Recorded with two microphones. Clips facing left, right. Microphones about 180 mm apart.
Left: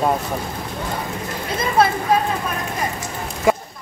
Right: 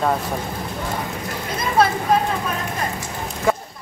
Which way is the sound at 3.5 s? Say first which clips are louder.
Left 3 dB; 15° left (ahead or behind).